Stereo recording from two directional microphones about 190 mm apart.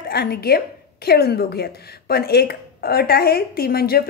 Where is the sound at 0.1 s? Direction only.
55° left (ahead or behind).